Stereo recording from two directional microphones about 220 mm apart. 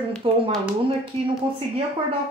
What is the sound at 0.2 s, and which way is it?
Speech, 25° right (ahead or behind).